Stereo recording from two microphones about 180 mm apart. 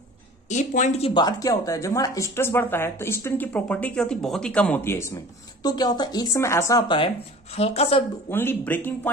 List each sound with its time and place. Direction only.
0.5 s speech: 40° left (ahead or behind); by 7.1 s 25° left (ahead or behind)
7.5 s speech: 35° left (ahead or behind)
8.3 s speech: 10° left (ahead or behind)